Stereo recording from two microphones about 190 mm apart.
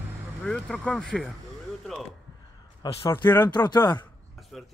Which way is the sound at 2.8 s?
25° left (ahead or behind).